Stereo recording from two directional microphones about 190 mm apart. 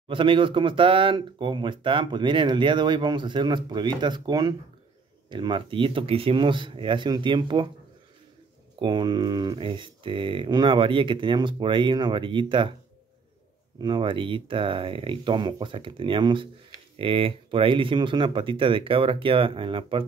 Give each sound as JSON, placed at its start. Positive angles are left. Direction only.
{"t": 0.1, "sound": "speech", "side_deg": -25}
{"t": 8.7, "sound": "speech", "side_deg": -25}
{"t": 13.7, "sound": "speech", "side_deg": -25}